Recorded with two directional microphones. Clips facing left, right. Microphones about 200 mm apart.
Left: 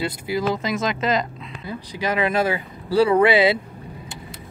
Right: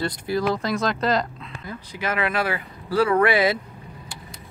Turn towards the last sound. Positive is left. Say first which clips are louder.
# left 3 dB
turn(degrees=25)  # may be behind; listen again after turning